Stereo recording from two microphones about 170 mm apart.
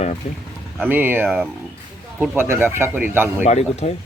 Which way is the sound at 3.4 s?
40° left (ahead or behind).